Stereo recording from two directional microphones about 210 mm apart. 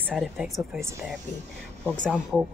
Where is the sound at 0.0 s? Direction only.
Centre (ahead or behind).